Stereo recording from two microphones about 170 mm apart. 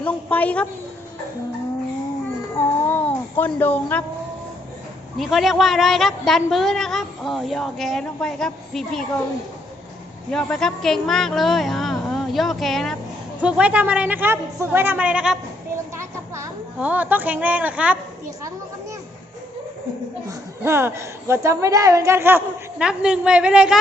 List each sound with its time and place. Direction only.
0.0 s a woman's voice: 10° left (ahead or behind)
2.6 s a sound: 10° left (ahead or behind)
5.1 s a woman's voice: centre (ahead or behind)
10.3 s a woman's voice: 5° left (ahead or behind)
16.0 s speech: 15° right (ahead or behind)
20.2 s a woman's voice: 15° right (ahead or behind)